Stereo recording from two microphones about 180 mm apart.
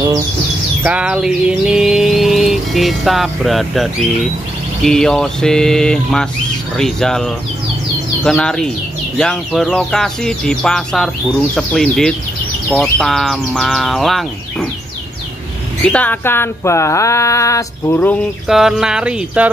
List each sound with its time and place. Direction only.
0.8 s a sound: 5° right (ahead or behind)
4.8 s bird: 5° left (ahead or behind)
15.8 s speech: 5° left (ahead or behind)
18.5 s bird: 5° right (ahead or behind)